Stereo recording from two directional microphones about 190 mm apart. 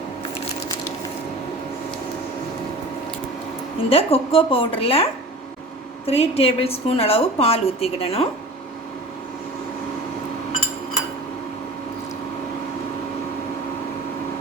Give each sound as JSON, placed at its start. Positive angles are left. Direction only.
{"t": 3.8, "sound": "a woman's voice", "side_deg": 30}
{"t": 6.1, "sound": "a woman's voice", "side_deg": 30}